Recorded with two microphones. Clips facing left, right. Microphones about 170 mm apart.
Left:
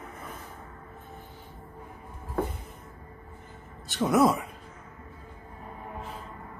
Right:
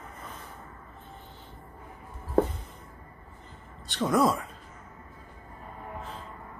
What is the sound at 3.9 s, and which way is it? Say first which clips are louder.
Speech: left 2 dB; 5° left (ahead or behind).